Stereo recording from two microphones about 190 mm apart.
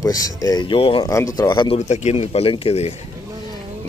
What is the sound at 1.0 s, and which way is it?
Speech, 20° left (ahead or behind).